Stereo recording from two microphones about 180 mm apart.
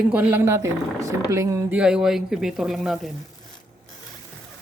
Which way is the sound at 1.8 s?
5° right (ahead or behind).